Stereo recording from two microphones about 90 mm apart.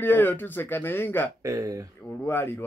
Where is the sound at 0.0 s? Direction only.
20° left (ahead or behind).